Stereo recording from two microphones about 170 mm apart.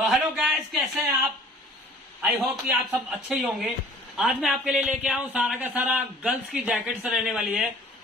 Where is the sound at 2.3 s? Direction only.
5° right (ahead or behind).